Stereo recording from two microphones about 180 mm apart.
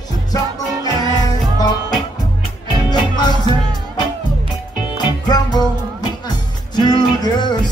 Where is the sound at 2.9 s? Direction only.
25° left (ahead or behind).